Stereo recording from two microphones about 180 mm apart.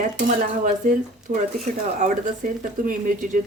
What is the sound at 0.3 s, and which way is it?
Speech, 45° right (ahead or behind).